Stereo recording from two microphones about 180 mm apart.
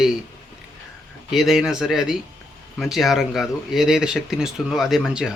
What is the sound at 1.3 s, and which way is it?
Speech, centre (ahead or behind).